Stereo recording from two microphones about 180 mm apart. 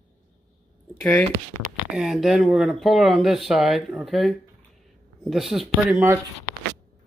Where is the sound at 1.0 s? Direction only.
5° left (ahead or behind).